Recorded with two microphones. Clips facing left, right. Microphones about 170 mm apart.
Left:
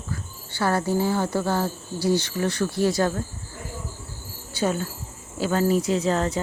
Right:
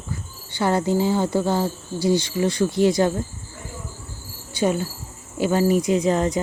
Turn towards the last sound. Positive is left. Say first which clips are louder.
# right 3 dB
turn(degrees=-15)  # may be behind; listen again after turning